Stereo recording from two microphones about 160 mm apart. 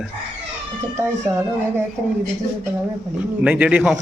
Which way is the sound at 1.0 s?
15° right (ahead or behind).